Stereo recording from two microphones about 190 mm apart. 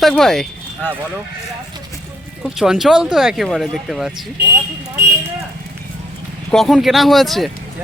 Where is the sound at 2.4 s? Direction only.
Centre (ahead or behind).